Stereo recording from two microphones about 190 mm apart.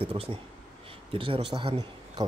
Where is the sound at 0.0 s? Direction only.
30° right (ahead or behind).